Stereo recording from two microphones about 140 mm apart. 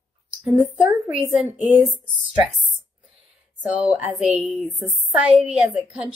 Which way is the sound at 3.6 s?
10° right (ahead or behind).